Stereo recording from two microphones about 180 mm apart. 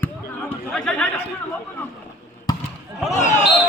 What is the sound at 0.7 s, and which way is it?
Speech, 5° left (ahead or behind).